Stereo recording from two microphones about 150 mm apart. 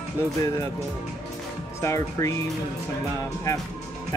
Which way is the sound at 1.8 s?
20° left (ahead or behind).